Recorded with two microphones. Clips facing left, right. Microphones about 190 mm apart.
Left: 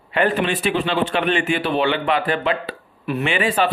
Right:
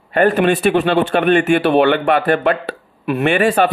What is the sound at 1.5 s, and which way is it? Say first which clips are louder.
Speech: right 7 dB; 65° right (ahead or behind).